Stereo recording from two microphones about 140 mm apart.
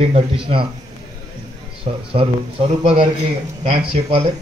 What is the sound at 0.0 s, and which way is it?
Speech, 40° right (ahead or behind).